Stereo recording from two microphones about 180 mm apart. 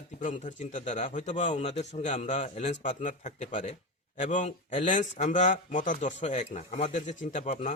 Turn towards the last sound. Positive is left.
turn(degrees=40)  # may be behind; listen again after turning